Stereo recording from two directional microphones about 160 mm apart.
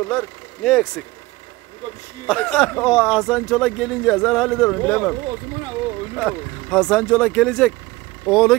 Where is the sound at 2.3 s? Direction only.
5° left (ahead or behind).